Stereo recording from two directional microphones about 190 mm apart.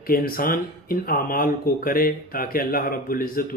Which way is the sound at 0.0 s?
50° left (ahead or behind).